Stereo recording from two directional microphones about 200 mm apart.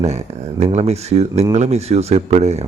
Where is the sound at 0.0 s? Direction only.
35° right (ahead or behind).